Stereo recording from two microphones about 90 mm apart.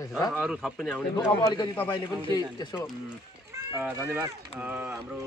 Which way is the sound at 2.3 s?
50° left (ahead or behind).